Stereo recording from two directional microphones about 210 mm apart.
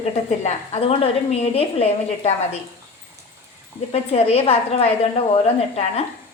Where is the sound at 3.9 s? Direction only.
30° left (ahead or behind).